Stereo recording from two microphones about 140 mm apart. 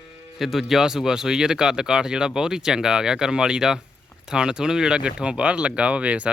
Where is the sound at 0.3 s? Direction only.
Centre (ahead or behind).